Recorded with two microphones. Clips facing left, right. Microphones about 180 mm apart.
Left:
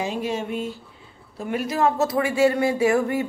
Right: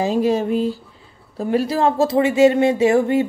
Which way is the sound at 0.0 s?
35° right (ahead or behind).